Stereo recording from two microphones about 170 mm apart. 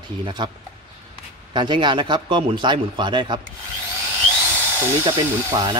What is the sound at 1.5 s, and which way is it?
Speech, 25° right (ahead or behind).